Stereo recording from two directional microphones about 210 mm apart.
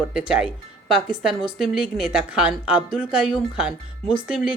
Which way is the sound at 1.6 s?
Centre (ahead or behind).